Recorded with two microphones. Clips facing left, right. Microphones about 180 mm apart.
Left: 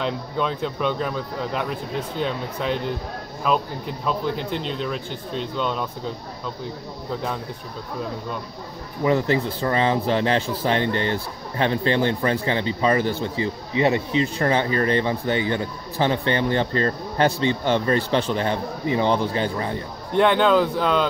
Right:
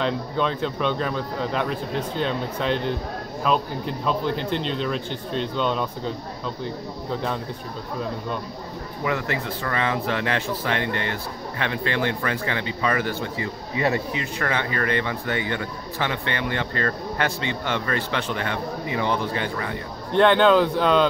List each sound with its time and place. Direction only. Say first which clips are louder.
0.0 s a man's voice: right 1 dB; 5° left (ahead or behind)
9.0 s speech: left 6 dB; 30° left (ahead or behind)
20.2 s a man's voice: right 1 dB; 5° left (ahead or behind)